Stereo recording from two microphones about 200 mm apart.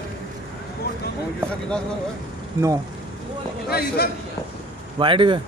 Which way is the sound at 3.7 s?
50° left (ahead or behind).